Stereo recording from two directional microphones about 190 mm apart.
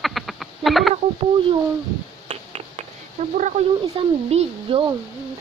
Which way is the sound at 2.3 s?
35° right (ahead or behind).